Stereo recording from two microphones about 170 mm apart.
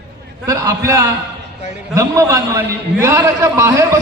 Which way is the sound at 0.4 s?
20° right (ahead or behind).